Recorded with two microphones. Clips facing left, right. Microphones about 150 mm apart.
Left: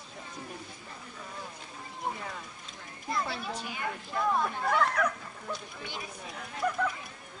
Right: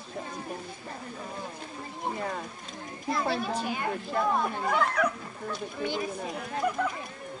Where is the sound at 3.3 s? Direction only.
45° right (ahead or behind).